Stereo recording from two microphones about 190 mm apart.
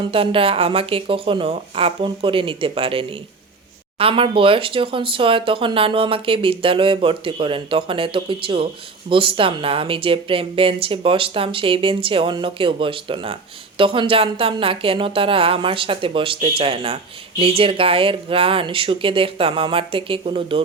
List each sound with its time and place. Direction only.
0.0 s speech: 30° right (ahead or behind)